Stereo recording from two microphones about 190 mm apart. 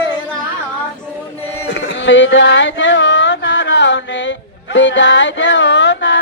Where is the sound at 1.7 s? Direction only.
70° left (ahead or behind).